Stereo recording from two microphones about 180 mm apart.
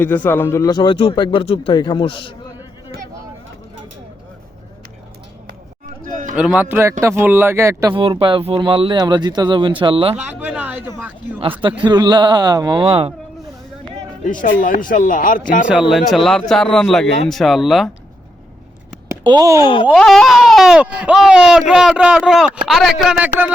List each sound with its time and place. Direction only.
0.0 s a man's voice: 10° left (ahead or behind); by 2.3 s 30° left (ahead or behind)
6.3 s speech: 5° right (ahead or behind)
7.9 s speech: 30° right (ahead or behind)
10.2 s a sound: 5° right (ahead or behind)
11.9 s speech: 25° right (ahead or behind)
14.3 s a man's voice: 45° left (ahead or behind)
15.6 s speech: 5° right (ahead or behind)
19.2 s speech: 20° right (ahead or behind)
19.5 s a man's voice: 25° left (ahead or behind)
19.9 s speech: centre (ahead or behind)